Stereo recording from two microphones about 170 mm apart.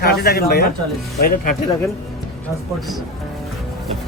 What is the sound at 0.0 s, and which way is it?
Speech, 65° left (ahead or behind).